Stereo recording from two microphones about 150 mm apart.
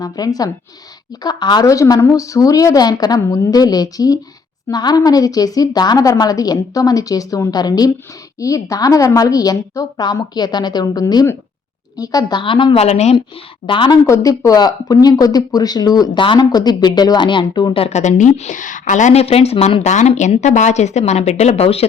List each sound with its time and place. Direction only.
0.0 s a woman's voice: 25° left (ahead or behind); by 13.1 s 45° left (ahead or behind)
13.7 s a woman's voice: 35° left (ahead or behind)
14.1 s speech: 20° left (ahead or behind)
17.8 s a woman's voice: 50° left (ahead or behind)